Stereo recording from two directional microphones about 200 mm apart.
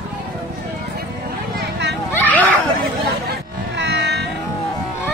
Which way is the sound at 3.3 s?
60° right (ahead or behind).